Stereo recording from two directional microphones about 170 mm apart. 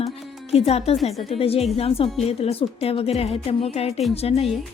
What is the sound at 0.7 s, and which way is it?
A woman's voice, 40° left (ahead or behind).